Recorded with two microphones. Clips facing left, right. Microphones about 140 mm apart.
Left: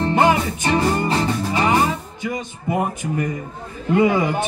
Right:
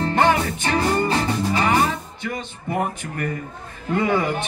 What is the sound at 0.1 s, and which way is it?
Music, 10° left (ahead or behind).